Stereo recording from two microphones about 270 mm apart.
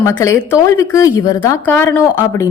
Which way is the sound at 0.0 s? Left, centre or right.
Centre.